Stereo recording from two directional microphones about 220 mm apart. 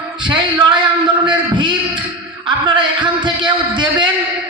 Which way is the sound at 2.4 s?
20° right (ahead or behind).